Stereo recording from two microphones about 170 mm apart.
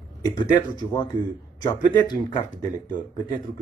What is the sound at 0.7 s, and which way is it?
Speech, 25° left (ahead or behind).